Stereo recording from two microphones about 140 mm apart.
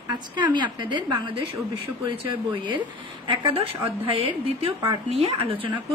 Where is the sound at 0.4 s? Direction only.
35° right (ahead or behind).